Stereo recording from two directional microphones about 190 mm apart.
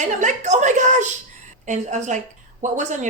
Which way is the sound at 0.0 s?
40° right (ahead or behind).